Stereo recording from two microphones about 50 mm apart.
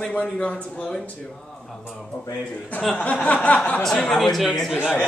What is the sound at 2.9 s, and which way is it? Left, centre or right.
Speech, left.